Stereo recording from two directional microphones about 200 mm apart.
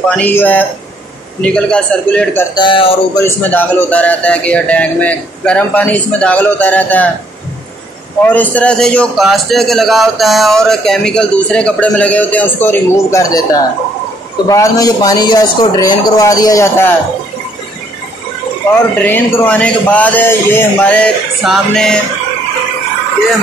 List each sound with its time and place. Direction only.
0.2 s a man's voice: 10° left (ahead or behind)
2.5 s speech: 25° left (ahead or behind)
3.2 s a man's voice: 10° left (ahead or behind)
8.3 s a man's voice: 10° left (ahead or behind)
18.9 s a man's voice: 10° left (ahead or behind)